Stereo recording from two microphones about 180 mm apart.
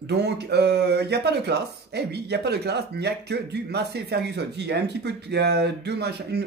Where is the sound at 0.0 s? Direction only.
70° right (ahead or behind).